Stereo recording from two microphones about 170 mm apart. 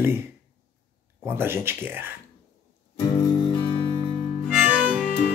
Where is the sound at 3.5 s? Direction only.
25° left (ahead or behind).